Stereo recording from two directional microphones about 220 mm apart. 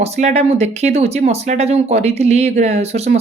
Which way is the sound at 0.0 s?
30° right (ahead or behind).